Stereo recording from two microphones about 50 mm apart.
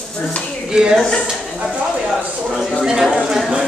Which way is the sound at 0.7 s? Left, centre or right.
Centre.